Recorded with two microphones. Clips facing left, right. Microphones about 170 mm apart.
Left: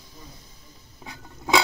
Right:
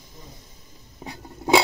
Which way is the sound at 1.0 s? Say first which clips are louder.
Right 5 dB; 35° right (ahead or behind).